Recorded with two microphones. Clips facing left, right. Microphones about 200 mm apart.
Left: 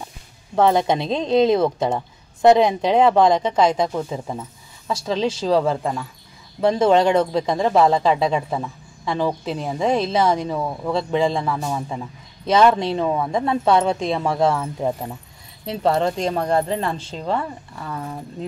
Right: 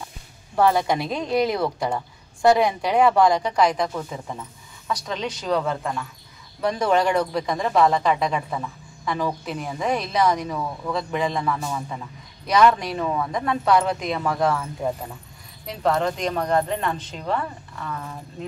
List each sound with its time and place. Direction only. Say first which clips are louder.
0.6 s speech: left 3 dB; 20° left (ahead or behind)